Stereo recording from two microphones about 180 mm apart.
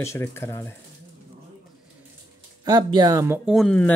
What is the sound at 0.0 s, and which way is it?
Speech, 15° left (ahead or behind).